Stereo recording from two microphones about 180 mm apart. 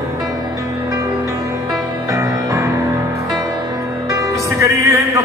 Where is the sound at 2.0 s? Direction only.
15° right (ahead or behind).